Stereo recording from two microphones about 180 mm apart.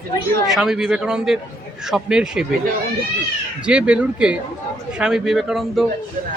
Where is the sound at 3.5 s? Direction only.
5° right (ahead or behind).